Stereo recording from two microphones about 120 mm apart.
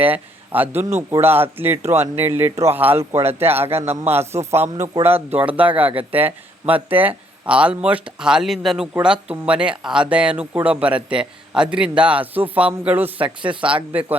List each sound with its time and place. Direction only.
0.0 s speech: 15° right (ahead or behind)
5.8 s speech: 50° right (ahead or behind)
6.1 s speech: 15° right (ahead or behind)
13.2 s speech: 45° right (ahead or behind)